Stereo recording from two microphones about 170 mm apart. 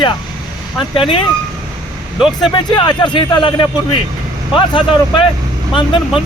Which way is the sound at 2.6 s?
25° left (ahead or behind).